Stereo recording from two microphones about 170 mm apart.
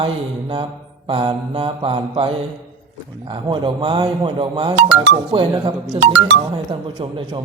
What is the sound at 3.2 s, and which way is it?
Speech, 30° right (ahead or behind).